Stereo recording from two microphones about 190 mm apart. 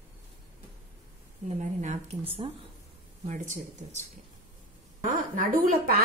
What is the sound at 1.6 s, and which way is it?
Speech, 40° right (ahead or behind).